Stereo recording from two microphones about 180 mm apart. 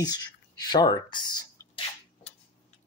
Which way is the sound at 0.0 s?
20° left (ahead or behind).